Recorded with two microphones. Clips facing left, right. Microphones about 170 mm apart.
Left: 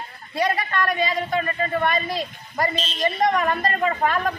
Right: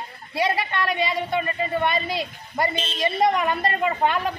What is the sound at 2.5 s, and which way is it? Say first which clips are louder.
Speech: even; 25° right (ahead or behind).